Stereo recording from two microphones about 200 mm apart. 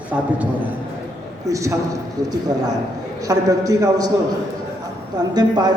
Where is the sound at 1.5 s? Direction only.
15° right (ahead or behind).